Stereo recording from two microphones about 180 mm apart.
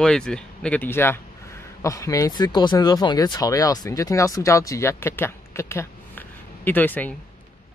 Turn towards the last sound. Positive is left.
turn(degrees=10)  # may be behind; listen again after turning